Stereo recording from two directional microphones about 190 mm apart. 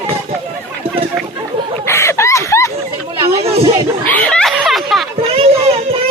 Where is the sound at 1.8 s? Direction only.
15° left (ahead or behind).